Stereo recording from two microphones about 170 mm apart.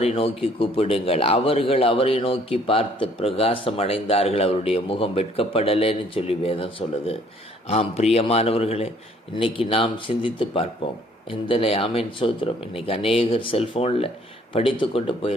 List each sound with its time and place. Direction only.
0.0 s a man's voice: 35° left (ahead or behind)